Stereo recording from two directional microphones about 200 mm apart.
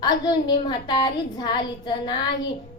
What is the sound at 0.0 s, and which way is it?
A child's voice, 20° left (ahead or behind).